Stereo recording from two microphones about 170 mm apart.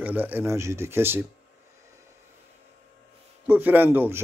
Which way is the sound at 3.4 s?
10° right (ahead or behind).